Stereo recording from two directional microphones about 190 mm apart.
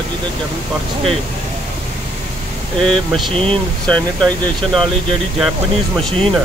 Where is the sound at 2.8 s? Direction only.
Centre (ahead or behind).